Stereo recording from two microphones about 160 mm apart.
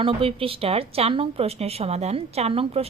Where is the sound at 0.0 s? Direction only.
35° right (ahead or behind).